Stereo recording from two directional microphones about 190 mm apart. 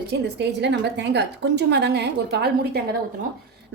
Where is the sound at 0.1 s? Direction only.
65° right (ahead or behind).